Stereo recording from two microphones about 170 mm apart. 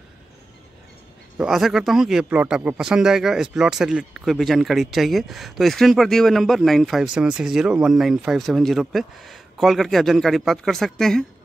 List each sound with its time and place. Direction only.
1.4 s speech: centre (ahead or behind)